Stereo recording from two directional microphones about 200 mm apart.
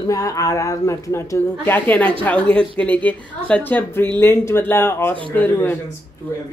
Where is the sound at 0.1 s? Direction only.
15° left (ahead or behind).